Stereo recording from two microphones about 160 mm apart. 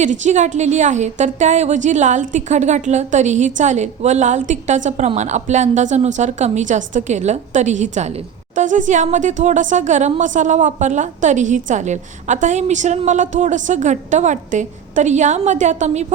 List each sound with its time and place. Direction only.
0.0 s a woman's voice: 50° right (ahead or behind)